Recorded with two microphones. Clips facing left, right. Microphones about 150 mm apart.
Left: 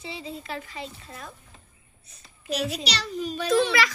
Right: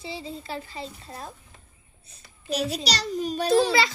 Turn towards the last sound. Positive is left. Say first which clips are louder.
# right 2 dB
turn(degrees=-30)  # may be behind; listen again after turning